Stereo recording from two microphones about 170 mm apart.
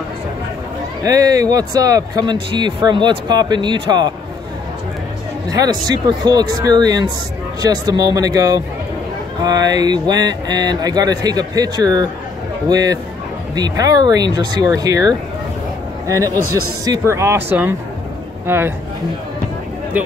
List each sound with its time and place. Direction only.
1.0 s speech: 20° right (ahead or behind)
5.5 s speech: 20° right (ahead or behind)